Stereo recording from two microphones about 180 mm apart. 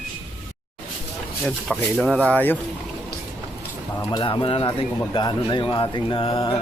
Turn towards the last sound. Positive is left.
turn(degrees=30)  # may be behind; listen again after turning